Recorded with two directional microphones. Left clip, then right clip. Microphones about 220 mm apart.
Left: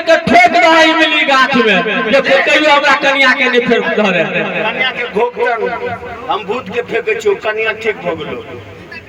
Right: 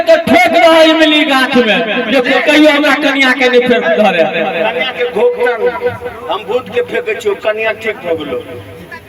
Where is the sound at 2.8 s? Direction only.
50° right (ahead or behind).